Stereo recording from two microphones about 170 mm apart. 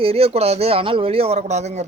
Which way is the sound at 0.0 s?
35° right (ahead or behind).